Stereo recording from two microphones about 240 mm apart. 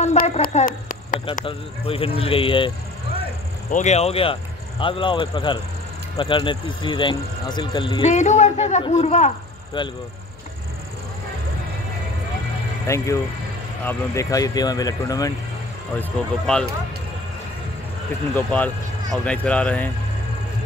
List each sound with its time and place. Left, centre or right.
0.0 s speech: left
3.7 s speech: left
9.8 s speech: centre
12.8 s speech: centre
16.0 s speech: centre
18.3 s speech: centre